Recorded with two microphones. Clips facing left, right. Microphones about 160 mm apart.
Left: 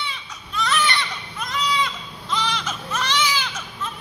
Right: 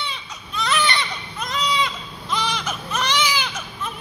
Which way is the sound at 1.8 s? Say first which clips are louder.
Right 1 dB; 15° right (ahead or behind).